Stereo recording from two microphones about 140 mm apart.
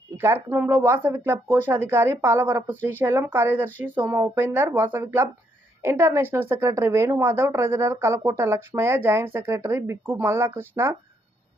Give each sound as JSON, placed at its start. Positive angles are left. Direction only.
{"t": 0.2, "sound": "speech", "side_deg": -15}